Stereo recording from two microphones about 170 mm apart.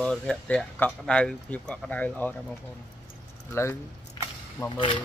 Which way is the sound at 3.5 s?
15° left (ahead or behind).